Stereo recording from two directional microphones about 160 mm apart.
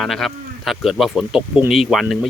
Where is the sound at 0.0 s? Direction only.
Centre (ahead or behind).